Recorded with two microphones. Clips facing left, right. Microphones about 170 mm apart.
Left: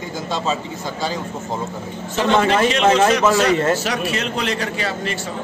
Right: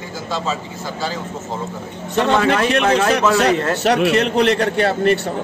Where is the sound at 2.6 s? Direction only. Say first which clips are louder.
Left 1 dB; 60° right (ahead or behind).